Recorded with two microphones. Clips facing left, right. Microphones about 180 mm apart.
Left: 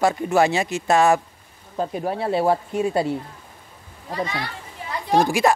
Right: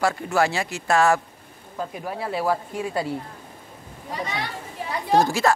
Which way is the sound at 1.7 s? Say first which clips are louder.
Left 6 dB; 30° left (ahead or behind).